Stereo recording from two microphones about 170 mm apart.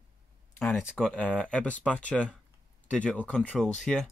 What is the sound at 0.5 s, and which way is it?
Speech, centre (ahead or behind).